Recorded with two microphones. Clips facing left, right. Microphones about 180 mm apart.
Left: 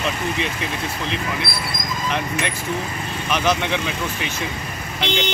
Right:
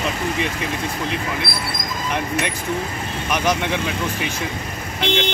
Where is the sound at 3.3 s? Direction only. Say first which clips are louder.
Even; 10° right (ahead or behind).